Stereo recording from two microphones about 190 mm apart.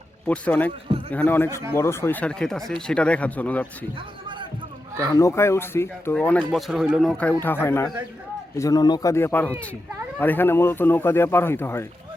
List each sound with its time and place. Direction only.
0.3 s speech: 10° left (ahead or behind)
3.9 s a sound: 25° right (ahead or behind)
5.1 s speech: 15° left (ahead or behind)